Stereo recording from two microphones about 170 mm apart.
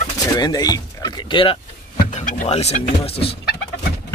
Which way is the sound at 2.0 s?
50° left (ahead or behind).